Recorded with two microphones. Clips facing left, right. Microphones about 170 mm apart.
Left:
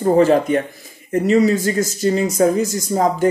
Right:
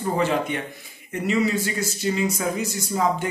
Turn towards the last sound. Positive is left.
turn(degrees=40)  # may be behind; listen again after turning